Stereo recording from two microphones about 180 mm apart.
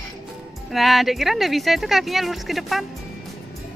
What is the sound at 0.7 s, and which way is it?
Speech, centre (ahead or behind).